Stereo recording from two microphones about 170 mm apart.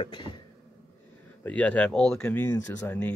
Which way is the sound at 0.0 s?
25° left (ahead or behind).